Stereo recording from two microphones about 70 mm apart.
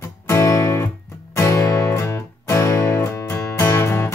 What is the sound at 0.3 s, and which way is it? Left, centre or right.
Music, left.